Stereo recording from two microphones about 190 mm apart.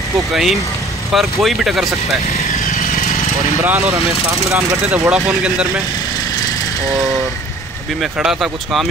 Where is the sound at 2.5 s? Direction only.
50° left (ahead or behind).